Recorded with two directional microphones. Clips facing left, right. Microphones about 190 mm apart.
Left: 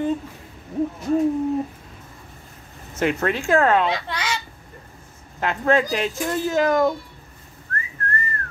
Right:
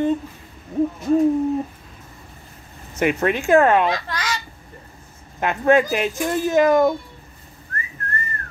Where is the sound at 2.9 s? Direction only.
15° right (ahead or behind).